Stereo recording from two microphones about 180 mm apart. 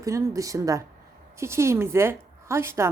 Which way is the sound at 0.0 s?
15° right (ahead or behind).